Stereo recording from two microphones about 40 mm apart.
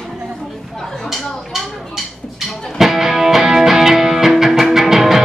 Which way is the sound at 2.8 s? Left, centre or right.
Centre.